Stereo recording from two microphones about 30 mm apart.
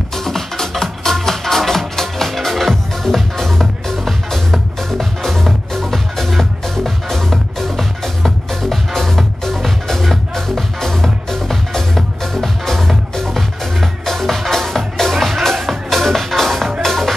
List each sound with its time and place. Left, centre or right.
0.2 s music: centre